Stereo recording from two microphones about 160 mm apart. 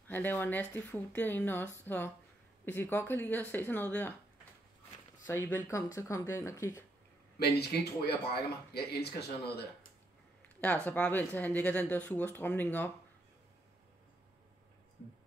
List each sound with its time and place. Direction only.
0.1 s speech: 10° left (ahead or behind)
5.2 s speech: 10° left (ahead or behind)
7.3 s speech: 85° left
10.6 s speech: 10° left (ahead or behind)